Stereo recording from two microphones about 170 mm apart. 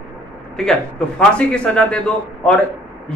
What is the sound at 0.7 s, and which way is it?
Speech, 5° left (ahead or behind).